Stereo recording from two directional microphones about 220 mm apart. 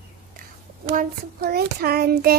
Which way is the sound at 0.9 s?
45° right (ahead or behind).